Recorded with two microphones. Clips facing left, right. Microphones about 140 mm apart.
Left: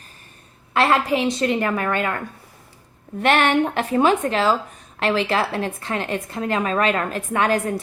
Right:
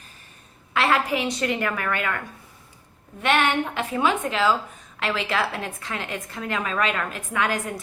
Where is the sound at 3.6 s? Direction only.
40° left (ahead or behind).